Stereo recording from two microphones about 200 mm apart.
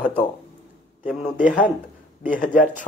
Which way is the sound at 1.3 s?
40° left (ahead or behind).